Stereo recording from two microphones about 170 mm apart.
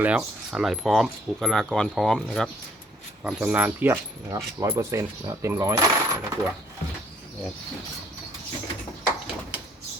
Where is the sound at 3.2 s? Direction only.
10° right (ahead or behind).